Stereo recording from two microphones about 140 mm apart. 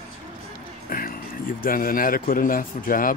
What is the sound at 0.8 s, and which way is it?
A man's voice, 90° left.